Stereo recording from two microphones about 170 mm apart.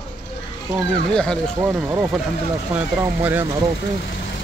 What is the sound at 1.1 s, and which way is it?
Speech, 5° left (ahead or behind).